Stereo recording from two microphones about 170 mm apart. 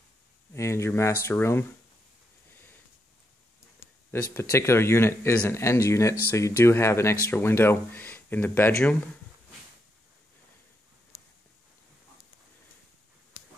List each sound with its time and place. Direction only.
0.6 s speech: 15° left (ahead or behind)
4.1 s speech: 15° left (ahead or behind)